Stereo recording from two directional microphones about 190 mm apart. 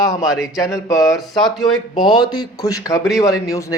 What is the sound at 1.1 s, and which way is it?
Speech, centre (ahead or behind).